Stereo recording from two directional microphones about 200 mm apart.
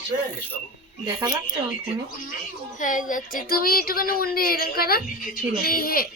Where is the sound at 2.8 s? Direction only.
40° left (ahead or behind).